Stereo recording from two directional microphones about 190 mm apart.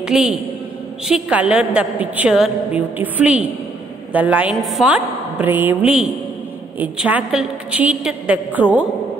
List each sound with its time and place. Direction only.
0.0 s a woman's voice: 5° right (ahead or behind)